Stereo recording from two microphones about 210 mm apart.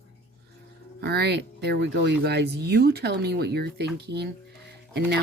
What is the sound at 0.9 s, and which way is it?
Speech, 50° right (ahead or behind).